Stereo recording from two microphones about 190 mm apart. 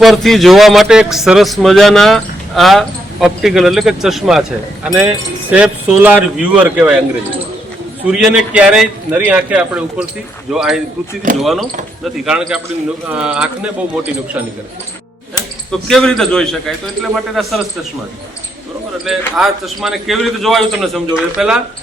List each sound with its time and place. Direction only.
0.0 s speech: centre (ahead or behind)
8.0 s speech: 5° right (ahead or behind)
11.3 s speech: 45° right (ahead or behind)
12.2 s speech: 5° right (ahead or behind)
15.9 s speech: centre (ahead or behind)
19.0 s speech: centre (ahead or behind)